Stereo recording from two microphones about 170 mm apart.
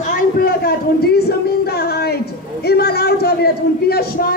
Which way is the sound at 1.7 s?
65° left (ahead or behind).